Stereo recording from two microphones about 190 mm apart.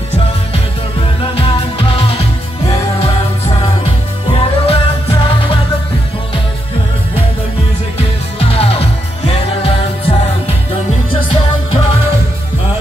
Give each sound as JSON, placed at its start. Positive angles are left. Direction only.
{"t": 1.3, "sound": "music", "side_deg": 30}
{"t": 8.4, "sound": "music", "side_deg": 30}